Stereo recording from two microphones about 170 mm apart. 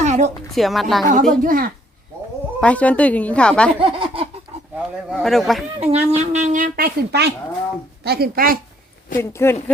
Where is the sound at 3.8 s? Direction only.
30° right (ahead or behind).